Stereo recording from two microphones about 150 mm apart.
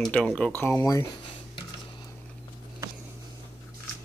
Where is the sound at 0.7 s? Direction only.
25° left (ahead or behind).